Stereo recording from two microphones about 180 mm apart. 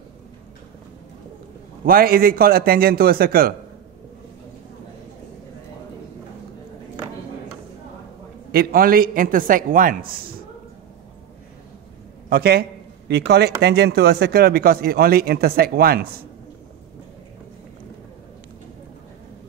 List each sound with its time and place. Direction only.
1.9 s speech: 55° right (ahead or behind)
8.5 s a man's voice: 55° right (ahead or behind)
12.3 s speech: 60° right (ahead or behind)